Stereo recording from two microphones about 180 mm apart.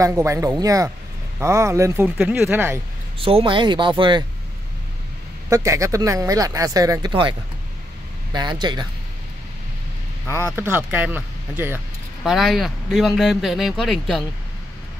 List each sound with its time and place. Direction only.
0.0 s speech: 15° right (ahead or behind)
3.2 s speech: 30° right (ahead or behind)
5.5 s speech: 15° right (ahead or behind)
10.2 s speech: 15° right (ahead or behind)
12.2 s speech: centre (ahead or behind)